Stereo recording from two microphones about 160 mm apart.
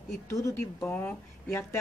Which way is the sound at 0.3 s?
20° left (ahead or behind).